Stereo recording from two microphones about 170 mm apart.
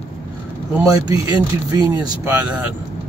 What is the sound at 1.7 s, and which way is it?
Speech, 10° right (ahead or behind).